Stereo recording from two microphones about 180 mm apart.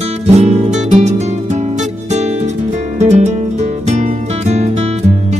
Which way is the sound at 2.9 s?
40° right (ahead or behind).